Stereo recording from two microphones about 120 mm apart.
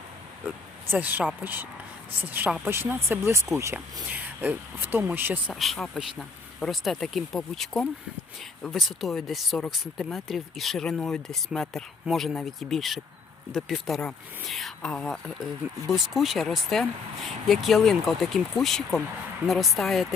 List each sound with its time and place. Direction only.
0.4 s speech: 15° right (ahead or behind)
5.5 s speech: centre (ahead or behind)